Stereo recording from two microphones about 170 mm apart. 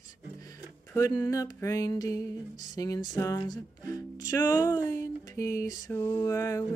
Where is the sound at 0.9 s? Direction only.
20° left (ahead or behind).